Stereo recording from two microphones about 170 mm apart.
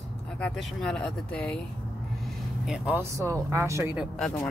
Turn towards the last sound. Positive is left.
turn(degrees=-5)  # may be behind; listen again after turning